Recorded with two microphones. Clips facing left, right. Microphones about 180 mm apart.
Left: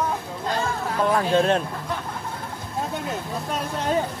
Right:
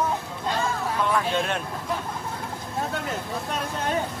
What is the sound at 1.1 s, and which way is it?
Speech, 35° left (ahead or behind).